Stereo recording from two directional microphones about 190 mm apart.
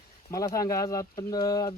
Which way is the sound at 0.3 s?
20° left (ahead or behind).